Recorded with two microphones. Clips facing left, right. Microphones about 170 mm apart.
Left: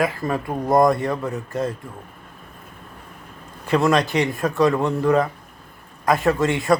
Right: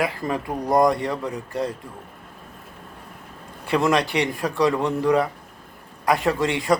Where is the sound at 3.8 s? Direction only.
15° right (ahead or behind).